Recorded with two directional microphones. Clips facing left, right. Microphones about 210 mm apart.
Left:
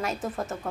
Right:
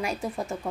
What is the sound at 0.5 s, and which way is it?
Speech, 10° right (ahead or behind).